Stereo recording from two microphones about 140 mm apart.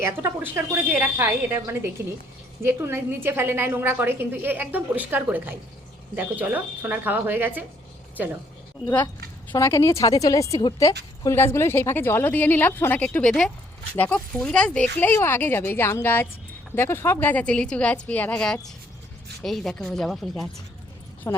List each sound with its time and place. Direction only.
0.0 s a woman's voice: 15° right (ahead or behind)
9.5 s a woman's voice: 20° left (ahead or behind); by 20.5 s centre (ahead or behind)
21.2 s speech: 20° left (ahead or behind)